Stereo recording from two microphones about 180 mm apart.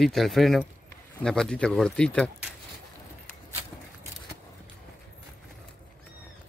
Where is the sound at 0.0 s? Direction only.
Centre (ahead or behind).